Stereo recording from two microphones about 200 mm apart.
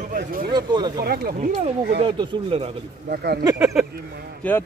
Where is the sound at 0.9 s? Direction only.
50° right (ahead or behind).